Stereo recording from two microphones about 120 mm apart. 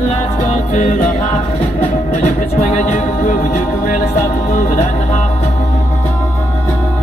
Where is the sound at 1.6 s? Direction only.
60° left (ahead or behind).